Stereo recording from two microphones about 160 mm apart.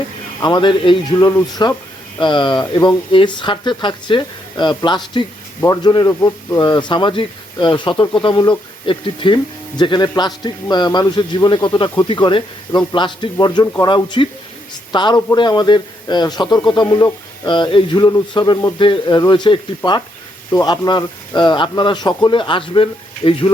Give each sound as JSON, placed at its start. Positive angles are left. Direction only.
{"t": 0.4, "sound": "speech", "side_deg": 30}